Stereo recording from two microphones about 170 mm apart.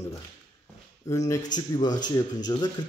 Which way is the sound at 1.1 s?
15° left (ahead or behind).